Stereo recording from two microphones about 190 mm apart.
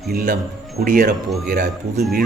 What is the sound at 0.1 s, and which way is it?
Speech, 45° right (ahead or behind).